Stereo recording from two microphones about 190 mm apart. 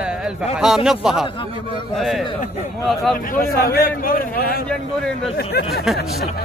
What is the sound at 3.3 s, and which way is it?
A man's voice, 50° left (ahead or behind).